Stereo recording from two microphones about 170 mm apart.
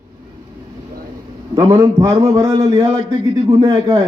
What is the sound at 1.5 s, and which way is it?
A man's voice, 15° right (ahead or behind).